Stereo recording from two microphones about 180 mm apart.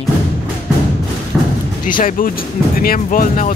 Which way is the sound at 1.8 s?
50° left (ahead or behind).